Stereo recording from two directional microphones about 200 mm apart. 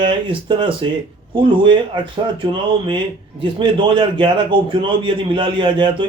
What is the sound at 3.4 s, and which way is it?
Speech, 25° right (ahead or behind).